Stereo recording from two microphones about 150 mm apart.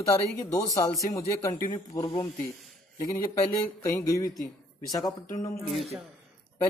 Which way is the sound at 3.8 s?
20° left (ahead or behind).